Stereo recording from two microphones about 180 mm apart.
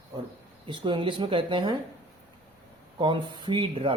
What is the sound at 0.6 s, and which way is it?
Speech, 25° right (ahead or behind).